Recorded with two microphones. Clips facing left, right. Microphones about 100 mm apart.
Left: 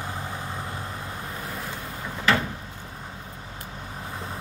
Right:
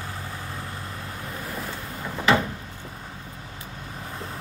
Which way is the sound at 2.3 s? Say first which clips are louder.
Right 2 dB; 20° right (ahead or behind).